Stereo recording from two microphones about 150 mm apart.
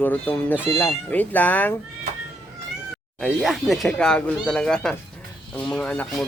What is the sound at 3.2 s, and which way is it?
Speech, centre (ahead or behind).